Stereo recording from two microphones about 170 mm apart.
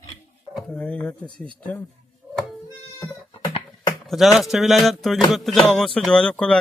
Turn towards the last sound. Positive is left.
turn(degrees=5)  # may be behind; listen again after turning